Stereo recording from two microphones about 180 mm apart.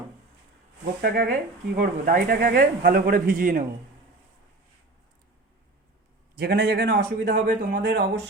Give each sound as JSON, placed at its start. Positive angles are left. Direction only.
{"t": 1.0, "sound": "speech", "side_deg": -50}
{"t": 6.3, "sound": "a man's voice", "side_deg": -60}
{"t": 7.3, "sound": "speech", "side_deg": -50}
{"t": 7.9, "sound": "speech", "side_deg": -75}